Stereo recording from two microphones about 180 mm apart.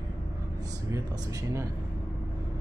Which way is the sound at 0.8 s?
20° right (ahead or behind).